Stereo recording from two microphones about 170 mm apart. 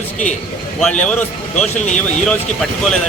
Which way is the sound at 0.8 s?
5° left (ahead or behind).